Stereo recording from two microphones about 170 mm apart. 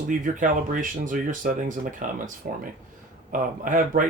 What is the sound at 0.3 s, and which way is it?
Speech, 50° right (ahead or behind).